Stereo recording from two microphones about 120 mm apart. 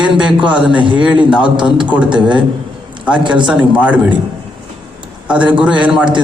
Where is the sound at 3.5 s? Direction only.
10° right (ahead or behind).